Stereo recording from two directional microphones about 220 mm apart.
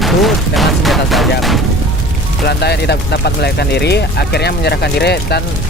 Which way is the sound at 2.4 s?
50° left (ahead or behind).